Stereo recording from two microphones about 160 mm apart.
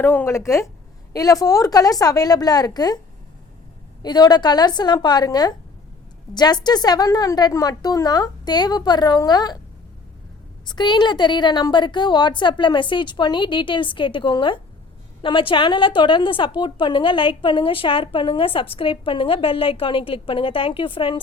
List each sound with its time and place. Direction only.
0.0 s a woman's voice: 10° left (ahead or behind)
4.0 s a woman's voice: 25° left (ahead or behind)
10.7 s a woman's voice: 30° left (ahead or behind)